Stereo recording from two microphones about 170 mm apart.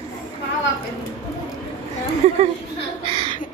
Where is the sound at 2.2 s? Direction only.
40° right (ahead or behind).